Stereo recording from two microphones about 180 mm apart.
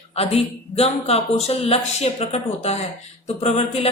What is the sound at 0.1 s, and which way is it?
Speech, 35° left (ahead or behind).